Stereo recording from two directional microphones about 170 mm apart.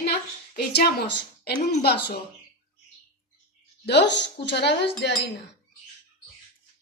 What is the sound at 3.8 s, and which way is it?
Speech, 85° left.